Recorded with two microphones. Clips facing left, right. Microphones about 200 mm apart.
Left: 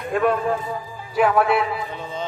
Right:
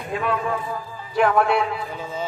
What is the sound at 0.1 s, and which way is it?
Speech, 50° left (ahead or behind).